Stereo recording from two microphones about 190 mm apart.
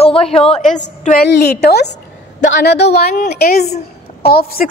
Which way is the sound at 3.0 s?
40° left (ahead or behind).